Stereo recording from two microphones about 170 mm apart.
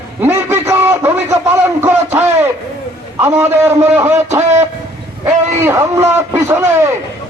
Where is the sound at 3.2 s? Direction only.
15° right (ahead or behind).